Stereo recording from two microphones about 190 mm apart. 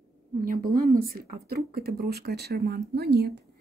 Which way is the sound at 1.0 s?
50° right (ahead or behind).